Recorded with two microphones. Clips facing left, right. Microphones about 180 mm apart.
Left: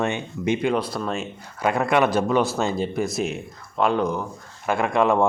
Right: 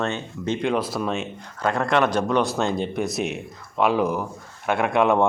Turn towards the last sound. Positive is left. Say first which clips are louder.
# even
turn(degrees=0)  # may be behind; listen again after turning